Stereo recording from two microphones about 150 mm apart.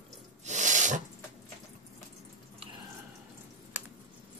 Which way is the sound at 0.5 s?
55° right (ahead or behind).